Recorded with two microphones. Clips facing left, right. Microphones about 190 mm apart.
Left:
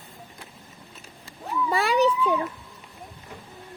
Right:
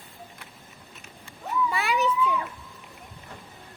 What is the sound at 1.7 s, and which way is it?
Children playing, 35° left (ahead or behind).